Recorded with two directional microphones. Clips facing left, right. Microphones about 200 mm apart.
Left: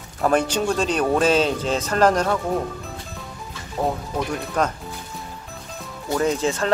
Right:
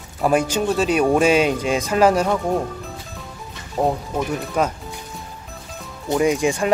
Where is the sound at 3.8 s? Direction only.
20° right (ahead or behind).